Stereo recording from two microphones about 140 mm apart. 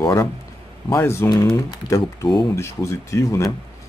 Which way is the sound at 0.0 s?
20° left (ahead or behind).